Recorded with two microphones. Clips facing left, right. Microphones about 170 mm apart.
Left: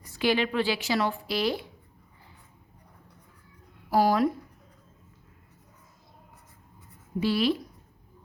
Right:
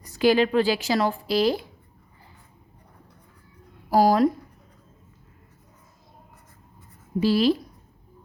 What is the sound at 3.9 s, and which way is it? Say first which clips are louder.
Speech: right 4 dB; 40° right (ahead or behind).